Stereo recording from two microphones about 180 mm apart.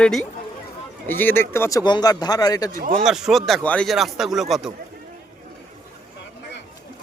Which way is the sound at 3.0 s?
Centre (ahead or behind).